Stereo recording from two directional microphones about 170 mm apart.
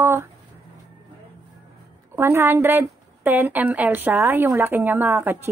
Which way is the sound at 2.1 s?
15° right (ahead or behind).